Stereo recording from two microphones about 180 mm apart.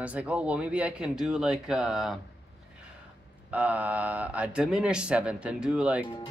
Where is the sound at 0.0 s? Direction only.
5° right (ahead or behind).